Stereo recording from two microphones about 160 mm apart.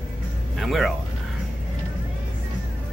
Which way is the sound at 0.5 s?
Centre (ahead or behind).